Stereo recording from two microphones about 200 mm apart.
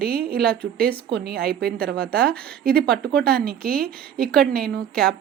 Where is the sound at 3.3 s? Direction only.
50° right (ahead or behind).